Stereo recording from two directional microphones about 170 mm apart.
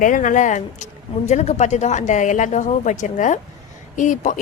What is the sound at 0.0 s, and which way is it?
A woman's voice, 50° left (ahead or behind).